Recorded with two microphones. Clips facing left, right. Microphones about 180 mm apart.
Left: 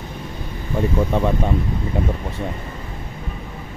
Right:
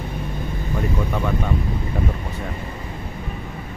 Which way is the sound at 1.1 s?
30° left (ahead or behind).